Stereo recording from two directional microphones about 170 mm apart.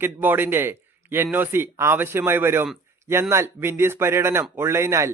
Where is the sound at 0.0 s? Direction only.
10° right (ahead or behind).